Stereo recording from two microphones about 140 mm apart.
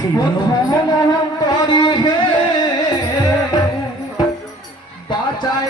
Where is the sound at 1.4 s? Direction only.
30° left (ahead or behind).